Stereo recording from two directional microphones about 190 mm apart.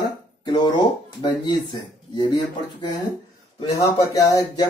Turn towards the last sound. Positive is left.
turn(degrees=15)  # may be behind; listen again after turning